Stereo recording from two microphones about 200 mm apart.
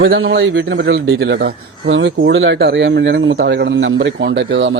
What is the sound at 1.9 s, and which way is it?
A man's voice, 70° right (ahead or behind).